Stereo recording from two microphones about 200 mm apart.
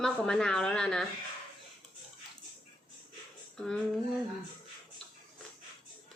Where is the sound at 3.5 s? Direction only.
5° left (ahead or behind).